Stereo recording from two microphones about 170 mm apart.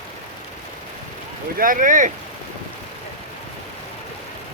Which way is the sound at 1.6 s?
50° right (ahead or behind).